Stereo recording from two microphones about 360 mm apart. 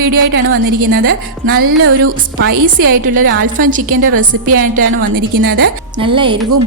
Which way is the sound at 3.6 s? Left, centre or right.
Right.